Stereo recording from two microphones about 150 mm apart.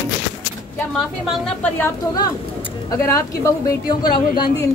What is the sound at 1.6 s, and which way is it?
Speech, 15° left (ahead or behind).